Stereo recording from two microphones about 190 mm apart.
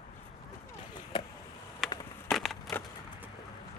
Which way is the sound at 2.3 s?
Centre (ahead or behind).